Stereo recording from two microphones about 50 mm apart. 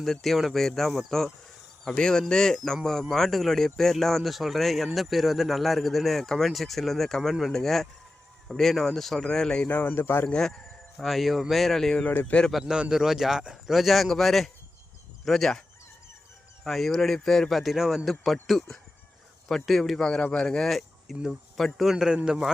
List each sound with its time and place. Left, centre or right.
0.0 s speech: centre
9.6 s speech: left
10.2 s speech: centre
11.0 s speech: centre
12.0 s speech: left
12.5 s a man's voice: centre
16.6 s speech: centre
17.6 s speech: centre
20.7 s speech: centre
21.8 s a man's voice: centre